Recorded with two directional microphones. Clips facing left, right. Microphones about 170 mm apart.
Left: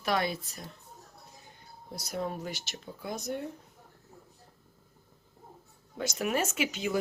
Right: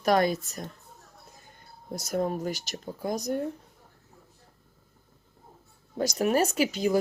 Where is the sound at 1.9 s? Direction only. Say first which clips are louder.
Right 6 dB; 45° right (ahead or behind).